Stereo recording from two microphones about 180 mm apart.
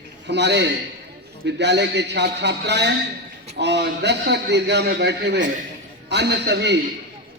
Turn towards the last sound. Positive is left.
turn(degrees=-70)  # may be behind; listen again after turning